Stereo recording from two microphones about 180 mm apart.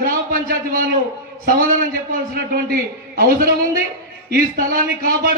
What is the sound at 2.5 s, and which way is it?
Speech, 55° right (ahead or behind).